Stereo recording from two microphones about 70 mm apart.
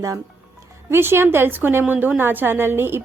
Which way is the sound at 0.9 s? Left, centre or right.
Right.